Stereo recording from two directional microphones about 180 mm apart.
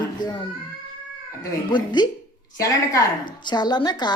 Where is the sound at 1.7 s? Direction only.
25° left (ahead or behind).